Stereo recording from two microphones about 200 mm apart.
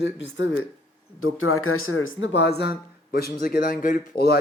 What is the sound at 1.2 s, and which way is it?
A man's voice, 90° left.